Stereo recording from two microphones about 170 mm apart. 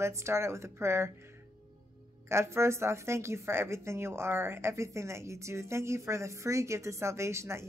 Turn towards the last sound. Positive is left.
turn(degrees=-15)  # may be behind; listen again after turning